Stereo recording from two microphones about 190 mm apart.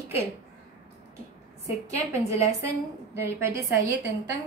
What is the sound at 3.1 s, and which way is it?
Speech, 15° right (ahead or behind).